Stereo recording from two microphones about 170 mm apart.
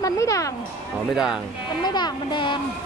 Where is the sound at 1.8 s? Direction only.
25° left (ahead or behind).